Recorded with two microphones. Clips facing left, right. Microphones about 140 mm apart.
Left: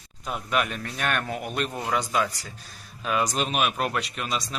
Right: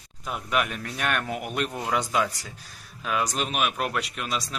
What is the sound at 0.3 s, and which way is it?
A man's voice, 5° right (ahead or behind).